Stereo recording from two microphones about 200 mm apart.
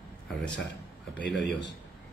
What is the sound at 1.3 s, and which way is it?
Speech, 60° left (ahead or behind).